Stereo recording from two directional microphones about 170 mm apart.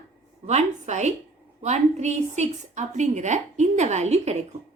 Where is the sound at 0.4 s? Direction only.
45° right (ahead or behind).